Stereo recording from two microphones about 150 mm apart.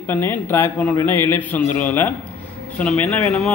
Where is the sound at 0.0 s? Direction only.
15° left (ahead or behind).